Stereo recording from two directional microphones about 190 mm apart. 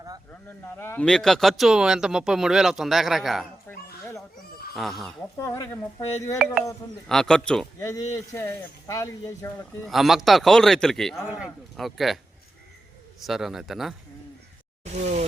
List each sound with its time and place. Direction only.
0.8 s speech: 10° left (ahead or behind)
3.7 s dog: 15° left (ahead or behind)
4.7 s speech: centre (ahead or behind)
5.4 s speech: 15° left (ahead or behind)
6.4 s speech: 5° right (ahead or behind)
7.8 s speech: 15° left (ahead or behind)
9.8 s speech: centre (ahead or behind)
15.0 s speech: 35° right (ahead or behind)